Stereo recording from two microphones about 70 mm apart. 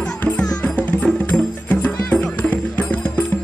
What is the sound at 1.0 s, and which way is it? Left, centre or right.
Music, centre.